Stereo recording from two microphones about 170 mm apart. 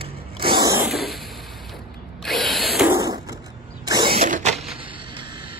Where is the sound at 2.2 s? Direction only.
Centre (ahead or behind).